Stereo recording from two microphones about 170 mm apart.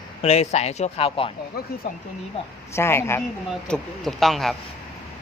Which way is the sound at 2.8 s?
15° left (ahead or behind).